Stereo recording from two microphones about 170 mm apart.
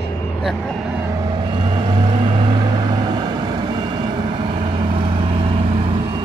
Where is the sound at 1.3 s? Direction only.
25° right (ahead or behind).